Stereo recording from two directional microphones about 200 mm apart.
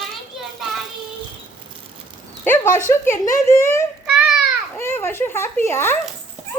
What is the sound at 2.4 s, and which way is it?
A woman's voice, 10° left (ahead or behind).